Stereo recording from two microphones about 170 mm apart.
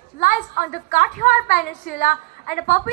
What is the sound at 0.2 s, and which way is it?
A woman's voice, 55° left (ahead or behind).